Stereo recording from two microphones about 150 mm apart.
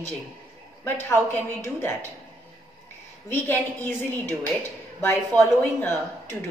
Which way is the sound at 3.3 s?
15° left (ahead or behind).